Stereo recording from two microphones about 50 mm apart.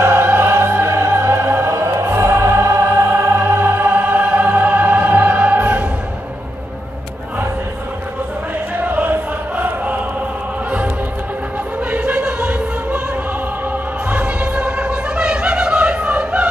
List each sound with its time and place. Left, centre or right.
0.0 s music: right
2.2 s music: right
3.9 s music: right
8.7 s chant: right
11.9 s music: right
14.0 s music: right